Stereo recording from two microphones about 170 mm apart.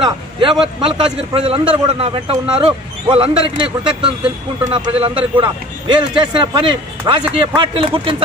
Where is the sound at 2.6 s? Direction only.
35° right (ahead or behind).